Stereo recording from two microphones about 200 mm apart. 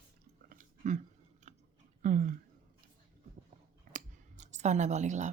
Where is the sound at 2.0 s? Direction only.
40° right (ahead or behind).